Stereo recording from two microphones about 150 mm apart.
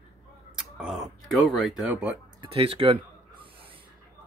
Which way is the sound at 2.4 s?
35° right (ahead or behind).